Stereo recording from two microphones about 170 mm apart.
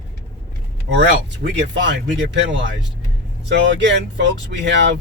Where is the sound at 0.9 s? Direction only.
90° right.